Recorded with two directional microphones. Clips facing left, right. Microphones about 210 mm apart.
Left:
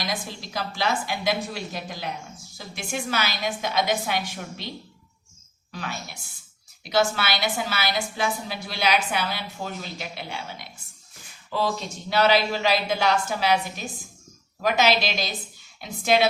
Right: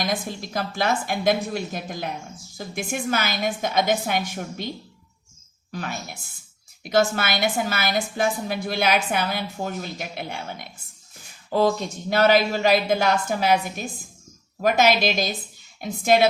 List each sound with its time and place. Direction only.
0.0 s a woman's voice: 50° right (ahead or behind)
5.7 s a woman's voice: 45° right (ahead or behind)